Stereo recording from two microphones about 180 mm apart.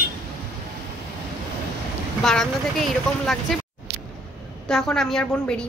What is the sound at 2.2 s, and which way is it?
A woman's voice, centre (ahead or behind).